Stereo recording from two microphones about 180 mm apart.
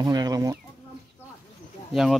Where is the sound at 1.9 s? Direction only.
Centre (ahead or behind).